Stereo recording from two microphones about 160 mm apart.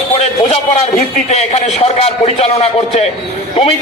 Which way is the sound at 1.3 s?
40° left (ahead or behind).